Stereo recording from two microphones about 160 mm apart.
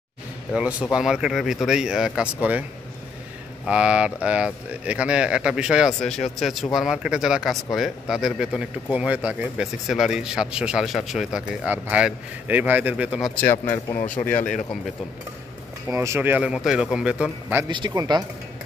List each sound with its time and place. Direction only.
0.5 s speech: 5° right (ahead or behind)
3.6 s speech: 5° right (ahead or behind)
13.3 s speech: 10° left (ahead or behind)
15.9 s speech: 20° right (ahead or behind)
17.6 s speech: 30° right (ahead or behind)